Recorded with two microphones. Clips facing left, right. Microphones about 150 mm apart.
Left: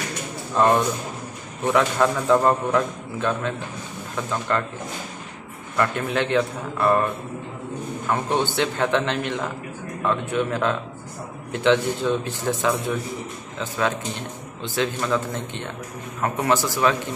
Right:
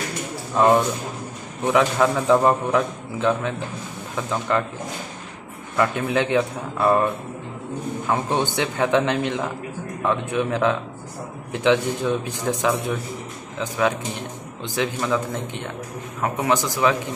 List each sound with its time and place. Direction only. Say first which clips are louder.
0.6 s a man's voice: right 2 dB; 15° right (ahead or behind)
5.8 s a man's voice: right 2 dB; 15° right (ahead or behind)
8.1 s a man's voice: even; 15° right (ahead or behind)